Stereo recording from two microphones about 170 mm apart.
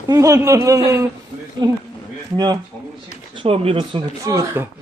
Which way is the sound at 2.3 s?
25° right (ahead or behind).